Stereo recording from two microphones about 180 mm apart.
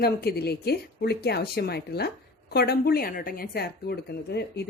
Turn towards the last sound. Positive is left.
turn(degrees=65)  # may be behind; listen again after turning